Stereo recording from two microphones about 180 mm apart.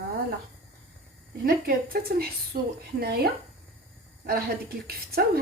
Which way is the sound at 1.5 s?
55° right (ahead or behind).